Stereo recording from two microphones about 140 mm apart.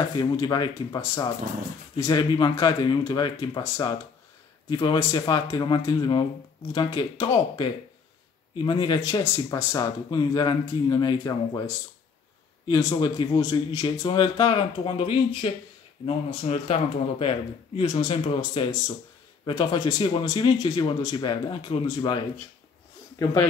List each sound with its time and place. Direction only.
0.1 s speech: 30° left (ahead or behind)
3.6 s speech: 20° left (ahead or behind)